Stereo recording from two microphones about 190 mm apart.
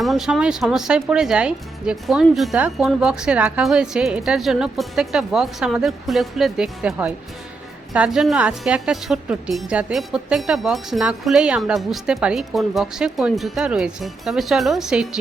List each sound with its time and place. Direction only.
0.0 s a woman's voice: centre (ahead or behind)